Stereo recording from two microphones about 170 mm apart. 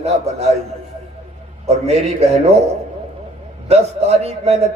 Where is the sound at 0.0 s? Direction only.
40° right (ahead or behind).